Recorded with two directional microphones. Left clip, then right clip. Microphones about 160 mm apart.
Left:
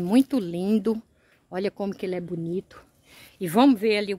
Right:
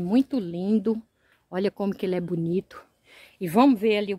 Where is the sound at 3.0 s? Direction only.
20° left (ahead or behind).